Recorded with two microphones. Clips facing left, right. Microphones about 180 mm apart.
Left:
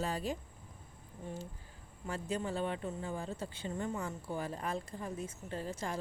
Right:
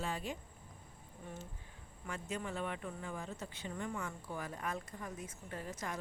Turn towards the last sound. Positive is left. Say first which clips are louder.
# left 4 dB
turn(degrees=30)  # may be behind; listen again after turning